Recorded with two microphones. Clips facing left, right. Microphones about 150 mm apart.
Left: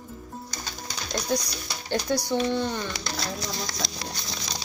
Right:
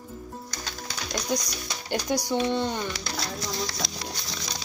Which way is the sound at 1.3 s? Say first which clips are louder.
Left 2 dB; 15° right (ahead or behind).